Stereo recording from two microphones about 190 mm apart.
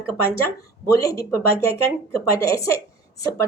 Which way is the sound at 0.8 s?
15° left (ahead or behind).